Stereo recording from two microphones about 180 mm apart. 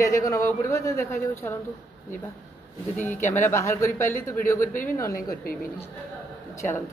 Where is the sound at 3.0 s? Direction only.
10° left (ahead or behind).